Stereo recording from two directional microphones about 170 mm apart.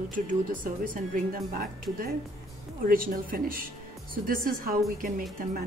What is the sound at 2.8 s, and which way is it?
A woman's voice, 55° right (ahead or behind).